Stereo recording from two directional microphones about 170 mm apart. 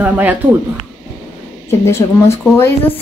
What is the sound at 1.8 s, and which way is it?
Speech, 15° left (ahead or behind).